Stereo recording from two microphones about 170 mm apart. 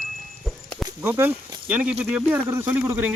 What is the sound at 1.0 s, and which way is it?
Speech, 15° right (ahead or behind).